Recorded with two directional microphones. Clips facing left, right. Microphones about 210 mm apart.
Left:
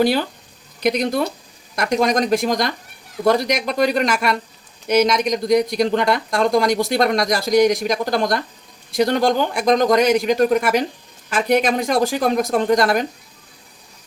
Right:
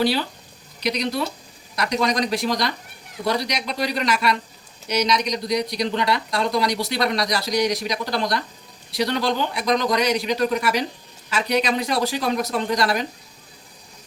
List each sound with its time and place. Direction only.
0.0 s speech: 50° left (ahead or behind)